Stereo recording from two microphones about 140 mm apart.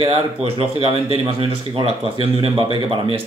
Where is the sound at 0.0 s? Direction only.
45° right (ahead or behind).